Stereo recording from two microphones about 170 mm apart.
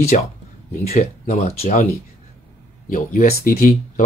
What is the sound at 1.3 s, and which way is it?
Speech, 40° left (ahead or behind).